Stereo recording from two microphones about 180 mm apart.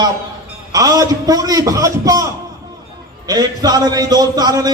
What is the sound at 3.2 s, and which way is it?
Speech, 20° right (ahead or behind).